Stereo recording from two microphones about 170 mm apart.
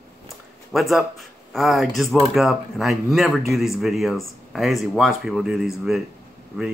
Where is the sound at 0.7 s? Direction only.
Centre (ahead or behind).